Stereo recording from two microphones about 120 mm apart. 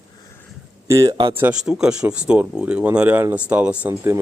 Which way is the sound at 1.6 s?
5° right (ahead or behind).